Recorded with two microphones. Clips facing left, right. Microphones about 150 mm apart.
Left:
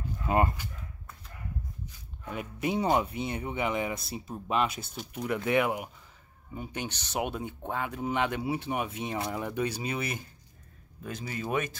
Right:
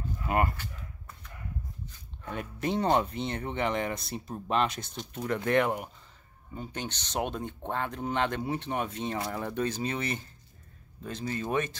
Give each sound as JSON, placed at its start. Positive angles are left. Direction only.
{"t": 0.3, "sound": "speech", "side_deg": 20}
{"t": 2.3, "sound": "speech", "side_deg": 10}